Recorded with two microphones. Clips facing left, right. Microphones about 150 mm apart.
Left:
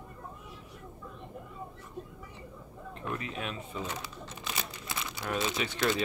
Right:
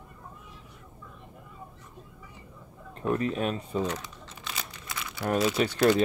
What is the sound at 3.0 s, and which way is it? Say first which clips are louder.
Speech: right 10 dB; 40° right (ahead or behind).